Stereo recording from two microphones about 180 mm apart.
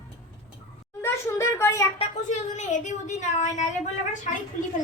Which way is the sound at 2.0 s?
40° left (ahead or behind).